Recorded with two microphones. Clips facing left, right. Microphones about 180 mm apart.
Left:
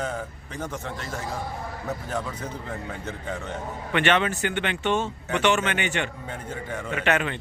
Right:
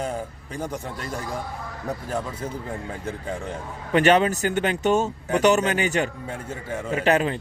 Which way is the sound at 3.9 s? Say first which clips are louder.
Right 5 dB; 40° right (ahead or behind).